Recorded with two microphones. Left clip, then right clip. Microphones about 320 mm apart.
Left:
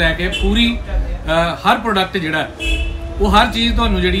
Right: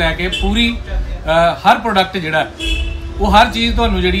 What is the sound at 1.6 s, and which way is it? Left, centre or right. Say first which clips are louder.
Speech: right 3 dB; right.